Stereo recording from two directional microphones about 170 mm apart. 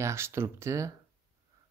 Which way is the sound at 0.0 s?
15° right (ahead or behind).